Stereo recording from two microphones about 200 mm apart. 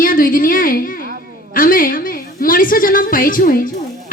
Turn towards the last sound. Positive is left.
turn(degrees=45)  # may be behind; listen again after turning